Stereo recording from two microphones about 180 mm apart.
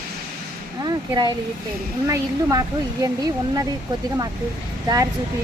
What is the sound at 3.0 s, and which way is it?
Speech, 20° right (ahead or behind).